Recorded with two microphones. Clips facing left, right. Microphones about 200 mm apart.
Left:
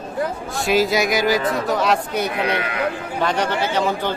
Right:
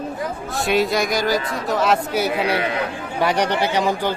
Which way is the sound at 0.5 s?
Centre (ahead or behind).